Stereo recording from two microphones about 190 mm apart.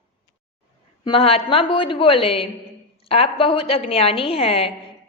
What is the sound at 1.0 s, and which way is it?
A woman's voice, 30° left (ahead or behind).